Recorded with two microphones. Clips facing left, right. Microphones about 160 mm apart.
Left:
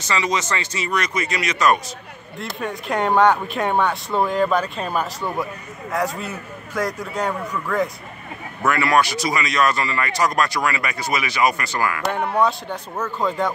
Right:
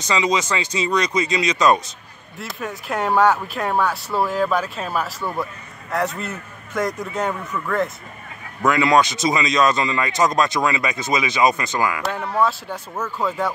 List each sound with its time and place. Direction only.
0.0 s speech: 15° right (ahead or behind)
2.3 s speech: 5° right (ahead or behind)
6.1 s a man's voice: 5° left (ahead or behind)
8.6 s speech: 20° right (ahead or behind)
13.0 s speech: 10° right (ahead or behind)